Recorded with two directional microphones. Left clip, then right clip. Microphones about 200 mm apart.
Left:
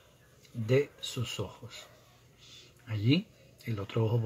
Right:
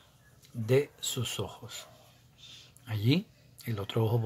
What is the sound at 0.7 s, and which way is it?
Speech, 15° right (ahead or behind).